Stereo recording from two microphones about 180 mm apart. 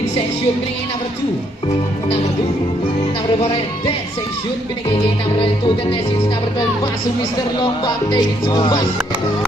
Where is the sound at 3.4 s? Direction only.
30° left (ahead or behind).